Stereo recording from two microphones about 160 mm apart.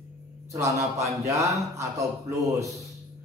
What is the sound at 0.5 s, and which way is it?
Speech, 20° right (ahead or behind).